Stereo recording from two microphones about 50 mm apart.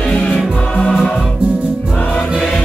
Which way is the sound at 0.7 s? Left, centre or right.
Centre.